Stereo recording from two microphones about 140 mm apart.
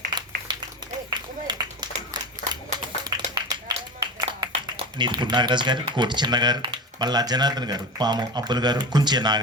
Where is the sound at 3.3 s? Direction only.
30° right (ahead or behind).